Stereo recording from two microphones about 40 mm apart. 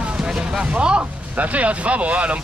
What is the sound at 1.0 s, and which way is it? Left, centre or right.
Speech, right.